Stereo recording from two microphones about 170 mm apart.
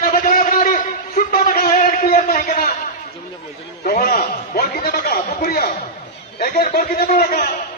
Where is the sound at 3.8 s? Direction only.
60° left (ahead or behind).